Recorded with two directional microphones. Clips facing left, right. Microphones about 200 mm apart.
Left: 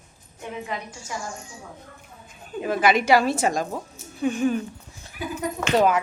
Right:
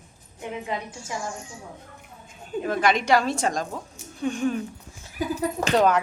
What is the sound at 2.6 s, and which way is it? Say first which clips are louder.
Speech: left 2 dB; 5° left (ahead or behind).